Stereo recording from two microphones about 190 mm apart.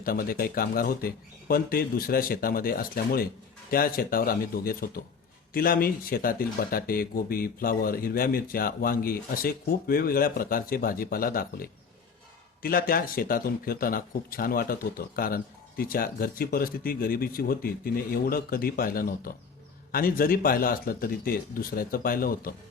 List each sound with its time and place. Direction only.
0.0 s speech: 50° left (ahead or behind)